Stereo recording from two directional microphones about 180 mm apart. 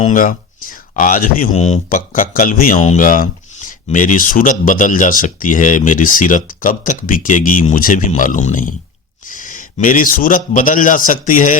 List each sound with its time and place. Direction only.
0.0 s a man's voice: 45° left (ahead or behind)